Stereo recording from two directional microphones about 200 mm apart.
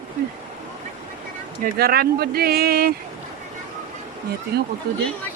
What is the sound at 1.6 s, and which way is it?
Speech, 50° right (ahead or behind).